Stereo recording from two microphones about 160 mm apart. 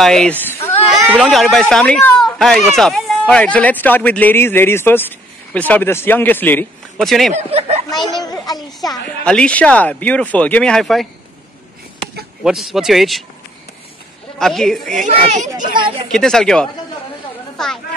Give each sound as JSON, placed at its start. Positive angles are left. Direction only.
{"t": 0.0, "sound": "speech", "side_deg": 5}
{"t": 7.3, "sound": "speech", "side_deg": -40}
{"t": 7.9, "sound": "a child's voice", "side_deg": 25}
{"t": 9.2, "sound": "speech", "side_deg": 5}
{"t": 12.4, "sound": "speech", "side_deg": 0}
{"t": 14.4, "sound": "speech", "side_deg": 0}
{"t": 15.0, "sound": "a child's voice", "side_deg": -50}
{"t": 16.1, "sound": "speech", "side_deg": 5}
{"t": 17.6, "sound": "chatter", "side_deg": 5}